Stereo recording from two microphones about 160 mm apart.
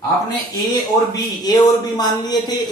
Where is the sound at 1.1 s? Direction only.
25° left (ahead or behind).